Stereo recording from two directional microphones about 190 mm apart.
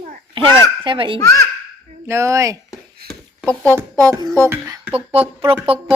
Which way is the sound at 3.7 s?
15° right (ahead or behind).